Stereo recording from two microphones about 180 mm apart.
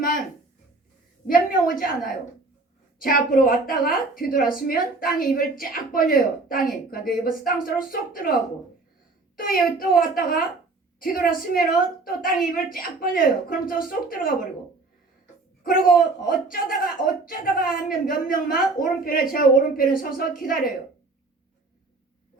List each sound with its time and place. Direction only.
1.3 s a woman's voice: 50° left (ahead or behind)
15.6 s a woman's voice: 50° left (ahead or behind)